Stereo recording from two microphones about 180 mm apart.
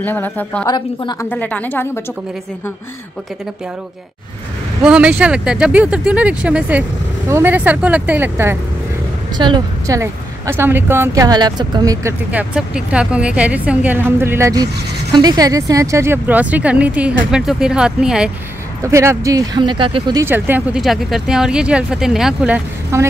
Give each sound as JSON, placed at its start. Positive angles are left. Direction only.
{"t": 0.0, "sound": "a woman's voice", "side_deg": 10}
{"t": 0.7, "sound": "a woman's voice", "side_deg": 25}
{"t": 1.3, "sound": "a woman's voice", "side_deg": 10}
{"t": 4.8, "sound": "a woman's voice", "side_deg": -5}
{"t": 18.8, "sound": "speech", "side_deg": -15}
{"t": 20.2, "sound": "speech", "side_deg": -10}
{"t": 22.9, "sound": "a woman's voice", "side_deg": -15}